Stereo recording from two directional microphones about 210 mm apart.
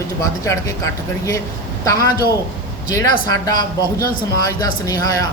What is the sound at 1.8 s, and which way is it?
Speech, 15° left (ahead or behind).